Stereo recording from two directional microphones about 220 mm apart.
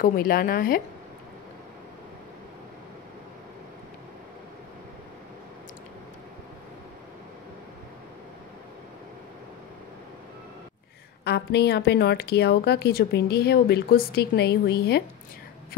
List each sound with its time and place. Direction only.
0.0 s a woman's voice: 40° left (ahead or behind)
11.2 s a woman's voice: 50° left (ahead or behind)